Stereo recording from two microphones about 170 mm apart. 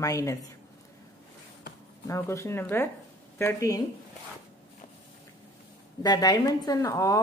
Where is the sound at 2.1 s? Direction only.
15° left (ahead or behind).